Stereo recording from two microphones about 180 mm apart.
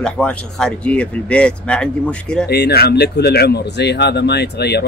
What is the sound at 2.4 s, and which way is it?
Speech, 65° left (ahead or behind).